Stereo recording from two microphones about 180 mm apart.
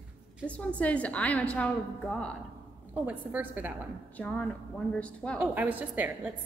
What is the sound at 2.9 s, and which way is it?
Speech, 10° right (ahead or behind).